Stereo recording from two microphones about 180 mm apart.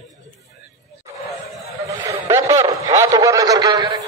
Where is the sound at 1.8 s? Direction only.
15° right (ahead or behind).